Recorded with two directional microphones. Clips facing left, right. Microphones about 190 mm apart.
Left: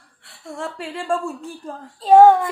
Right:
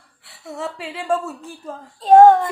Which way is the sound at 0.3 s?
Centre (ahead or behind).